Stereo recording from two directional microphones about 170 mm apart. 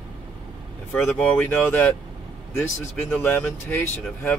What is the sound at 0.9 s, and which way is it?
Speech, 5° left (ahead or behind).